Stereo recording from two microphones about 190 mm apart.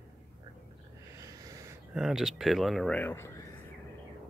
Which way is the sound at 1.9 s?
Centre (ahead or behind).